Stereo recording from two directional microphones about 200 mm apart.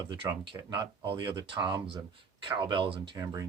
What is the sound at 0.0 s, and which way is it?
Speech, 20° right (ahead or behind).